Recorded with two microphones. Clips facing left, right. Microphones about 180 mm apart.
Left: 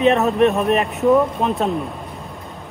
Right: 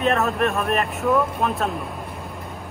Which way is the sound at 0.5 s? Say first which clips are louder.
Left 5 dB; 35° left (ahead or behind).